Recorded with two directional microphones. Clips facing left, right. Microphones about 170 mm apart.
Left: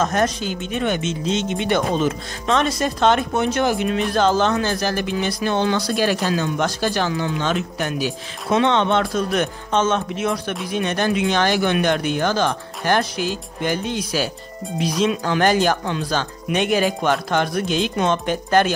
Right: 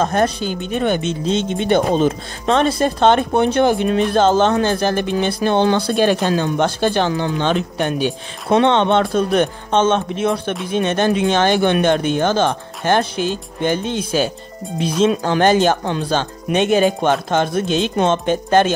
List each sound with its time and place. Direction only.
0.0 s speech: 30° right (ahead or behind)
8.5 s speech: 55° right (ahead or behind)
8.7 s speech: 25° right (ahead or behind)